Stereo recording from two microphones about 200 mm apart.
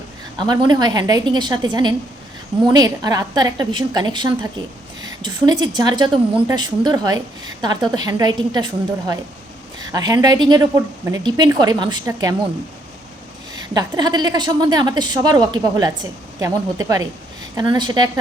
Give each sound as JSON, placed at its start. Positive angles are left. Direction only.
{"t": 0.3, "sound": "a woman's voice", "side_deg": -20}
{"t": 13.5, "sound": "a woman's voice", "side_deg": -20}